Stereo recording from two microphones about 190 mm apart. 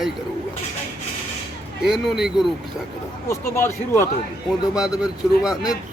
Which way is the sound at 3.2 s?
15° left (ahead or behind).